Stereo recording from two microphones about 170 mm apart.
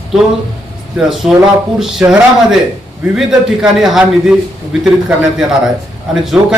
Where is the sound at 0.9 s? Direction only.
5° right (ahead or behind).